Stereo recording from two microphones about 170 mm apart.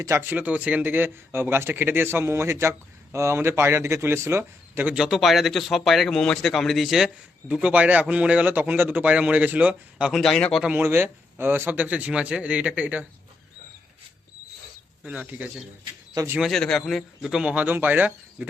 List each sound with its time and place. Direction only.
0.0 s speech: 15° right (ahead or behind); by 10.7 s 5° left (ahead or behind)
10.7 s speech: 15° right (ahead or behind)
15.0 s speech: 10° right (ahead or behind)
16.4 s speech: centre (ahead or behind)